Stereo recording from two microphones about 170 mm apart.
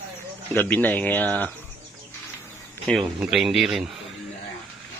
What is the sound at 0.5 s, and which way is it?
Speech, 10° left (ahead or behind).